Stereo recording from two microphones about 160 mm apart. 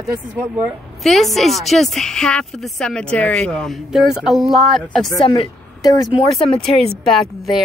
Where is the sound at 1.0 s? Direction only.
Centre (ahead or behind).